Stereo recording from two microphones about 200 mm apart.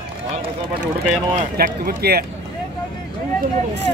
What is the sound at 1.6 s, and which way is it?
Speech, 45° right (ahead or behind).